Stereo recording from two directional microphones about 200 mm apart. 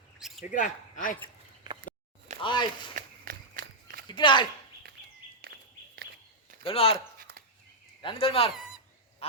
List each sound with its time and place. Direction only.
0.2 s a sound: centre (ahead or behind)
0.6 s speech: 40° left (ahead or behind)
2.4 s speech: 20° left (ahead or behind)
2.9 s a sound: 45° right (ahead or behind)
4.0 s speech: 25° left (ahead or behind)
5.4 s bird: 50° right (ahead or behind)
6.7 s speech: 30° left (ahead or behind)
7.2 s a sound: 45° right (ahead or behind)
8.0 s speech: 30° left (ahead or behind)